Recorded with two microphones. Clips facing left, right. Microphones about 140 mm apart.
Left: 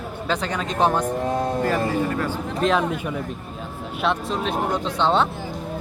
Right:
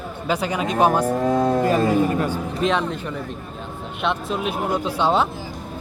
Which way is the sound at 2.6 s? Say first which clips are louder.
Left 1 dB; 5° left (ahead or behind).